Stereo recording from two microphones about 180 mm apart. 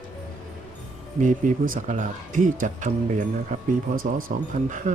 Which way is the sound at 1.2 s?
50° right (ahead or behind).